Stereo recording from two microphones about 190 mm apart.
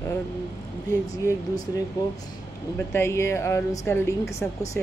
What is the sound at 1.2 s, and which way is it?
Speech, 20° left (ahead or behind).